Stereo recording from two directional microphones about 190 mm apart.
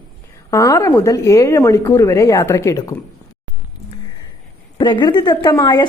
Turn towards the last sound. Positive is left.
turn(degrees=20)  # may be behind; listen again after turning